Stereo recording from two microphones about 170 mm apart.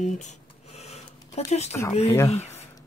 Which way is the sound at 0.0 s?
45° left (ahead or behind).